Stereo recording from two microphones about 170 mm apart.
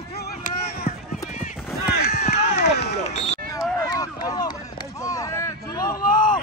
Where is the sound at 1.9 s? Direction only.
70° left (ahead or behind).